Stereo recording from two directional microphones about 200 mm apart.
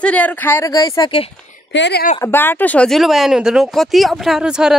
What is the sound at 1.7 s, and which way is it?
Speech, 60° left (ahead or behind).